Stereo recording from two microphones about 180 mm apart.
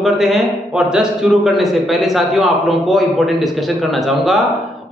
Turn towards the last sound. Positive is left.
turn(degrees=0)  # may be behind; listen again after turning